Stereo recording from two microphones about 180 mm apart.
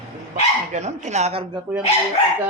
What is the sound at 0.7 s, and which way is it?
Speech, 40° right (ahead or behind).